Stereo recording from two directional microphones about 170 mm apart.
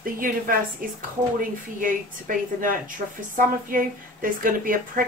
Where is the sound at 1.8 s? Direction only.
50° right (ahead or behind).